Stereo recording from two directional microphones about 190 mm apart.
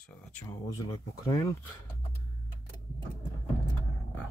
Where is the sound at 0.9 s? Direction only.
15° left (ahead or behind).